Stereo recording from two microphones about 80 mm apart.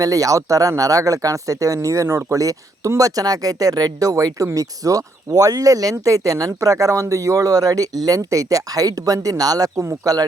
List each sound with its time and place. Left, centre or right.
0.0 s speech: right
9.7 s speech: right